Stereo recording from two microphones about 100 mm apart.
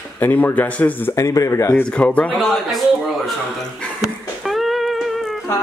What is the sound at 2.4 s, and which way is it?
Speech, centre (ahead or behind).